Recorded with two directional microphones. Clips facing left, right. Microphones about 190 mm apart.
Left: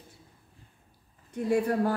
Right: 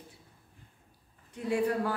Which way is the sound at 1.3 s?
45° left (ahead or behind).